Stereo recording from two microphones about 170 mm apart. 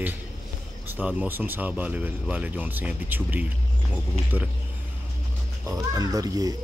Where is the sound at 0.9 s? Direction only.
10° right (ahead or behind).